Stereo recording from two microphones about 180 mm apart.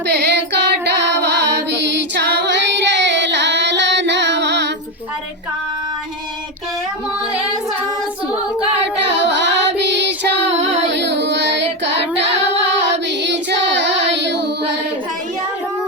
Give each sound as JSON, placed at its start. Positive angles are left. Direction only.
{"t": 0.1, "sound": "music", "side_deg": -70}
{"t": 8.8, "sound": "music", "side_deg": -80}
{"t": 10.6, "sound": "child singing", "side_deg": -80}
{"t": 12.2, "sound": "singing", "side_deg": -80}